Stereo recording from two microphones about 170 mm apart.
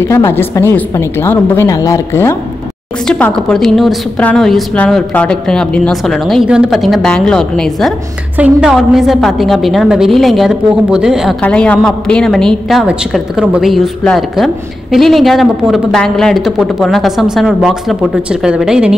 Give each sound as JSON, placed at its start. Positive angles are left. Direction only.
{"t": 0.0, "sound": "a woman's voice", "side_deg": 15}
{"t": 3.1, "sound": "a woman's voice", "side_deg": 5}
{"t": 11.4, "sound": "a woman's voice", "side_deg": 5}